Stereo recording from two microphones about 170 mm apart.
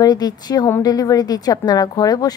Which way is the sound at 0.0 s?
25° left (ahead or behind).